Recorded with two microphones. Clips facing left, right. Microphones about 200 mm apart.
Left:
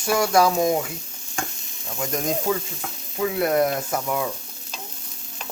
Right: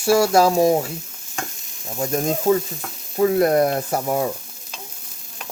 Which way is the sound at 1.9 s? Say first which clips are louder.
Right 4 dB; 30° right (ahead or behind).